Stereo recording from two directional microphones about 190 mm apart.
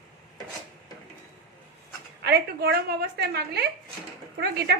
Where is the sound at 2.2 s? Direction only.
60° right (ahead or behind).